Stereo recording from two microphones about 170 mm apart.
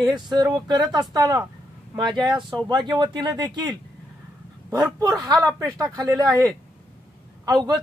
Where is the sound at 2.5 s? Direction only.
25° right (ahead or behind).